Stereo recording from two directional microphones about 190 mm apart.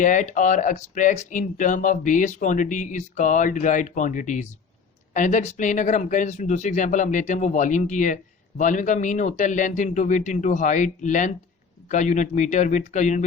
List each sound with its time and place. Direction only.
0.0 s speech: 40° left (ahead or behind)